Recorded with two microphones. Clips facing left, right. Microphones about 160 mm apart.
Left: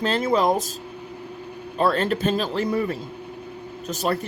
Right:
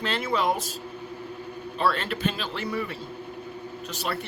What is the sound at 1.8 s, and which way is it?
Speech, 40° left (ahead or behind).